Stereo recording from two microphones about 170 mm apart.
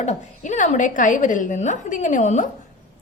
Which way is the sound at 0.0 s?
45° left (ahead or behind).